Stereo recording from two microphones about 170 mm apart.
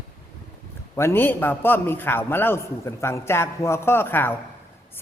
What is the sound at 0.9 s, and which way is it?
A man's voice, 15° left (ahead or behind).